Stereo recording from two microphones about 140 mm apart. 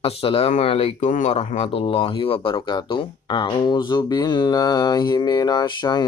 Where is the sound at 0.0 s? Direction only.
40° left (ahead or behind).